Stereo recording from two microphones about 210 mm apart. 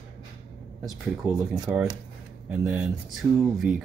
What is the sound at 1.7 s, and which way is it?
Speech, 10° right (ahead or behind).